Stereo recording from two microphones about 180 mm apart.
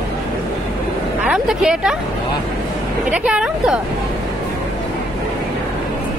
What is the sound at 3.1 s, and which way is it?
Speech, 5° right (ahead or behind).